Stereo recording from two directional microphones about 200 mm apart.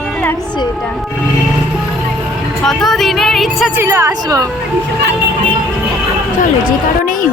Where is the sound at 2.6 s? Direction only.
Centre (ahead or behind).